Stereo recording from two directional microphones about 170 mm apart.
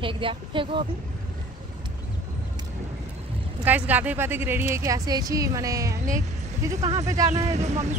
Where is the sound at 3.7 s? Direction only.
10° right (ahead or behind).